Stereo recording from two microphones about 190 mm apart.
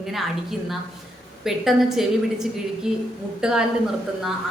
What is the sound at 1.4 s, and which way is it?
A woman's voice, centre (ahead or behind).